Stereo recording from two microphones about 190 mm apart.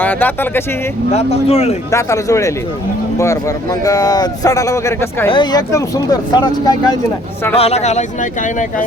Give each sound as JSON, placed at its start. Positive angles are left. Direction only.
{"t": 0.0, "sound": "speech", "side_deg": 10}
{"t": 1.1, "sound": "speech", "side_deg": 35}
{"t": 1.9, "sound": "speech", "side_deg": 15}
{"t": 5.3, "sound": "speech", "side_deg": 25}
{"t": 7.5, "sound": "speech", "side_deg": 35}